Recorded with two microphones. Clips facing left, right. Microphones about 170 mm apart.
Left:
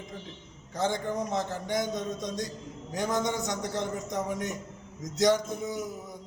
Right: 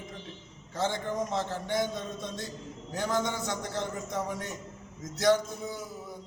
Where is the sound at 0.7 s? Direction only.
15° left (ahead or behind).